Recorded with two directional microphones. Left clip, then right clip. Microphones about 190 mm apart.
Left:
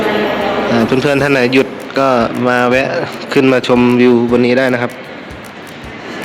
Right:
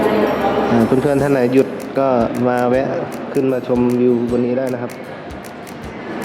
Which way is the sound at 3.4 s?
5° left (ahead or behind).